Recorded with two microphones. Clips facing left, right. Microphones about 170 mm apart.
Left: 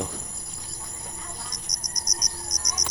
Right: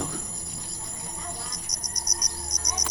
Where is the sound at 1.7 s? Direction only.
30° right (ahead or behind).